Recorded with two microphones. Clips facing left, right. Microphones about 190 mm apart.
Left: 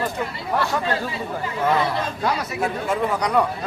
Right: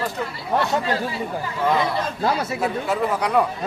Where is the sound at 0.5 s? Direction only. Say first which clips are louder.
Right 2 dB; 25° right (ahead or behind).